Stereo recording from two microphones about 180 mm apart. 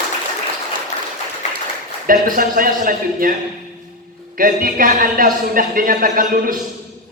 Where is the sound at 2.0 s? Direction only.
50° right (ahead or behind).